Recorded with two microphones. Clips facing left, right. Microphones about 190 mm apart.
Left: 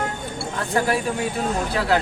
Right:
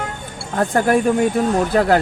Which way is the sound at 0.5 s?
50° right (ahead or behind).